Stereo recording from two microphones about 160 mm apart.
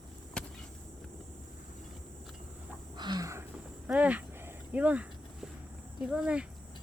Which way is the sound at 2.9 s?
25° right (ahead or behind).